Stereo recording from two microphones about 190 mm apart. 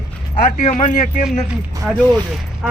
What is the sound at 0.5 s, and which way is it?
Speech, 40° left (ahead or behind).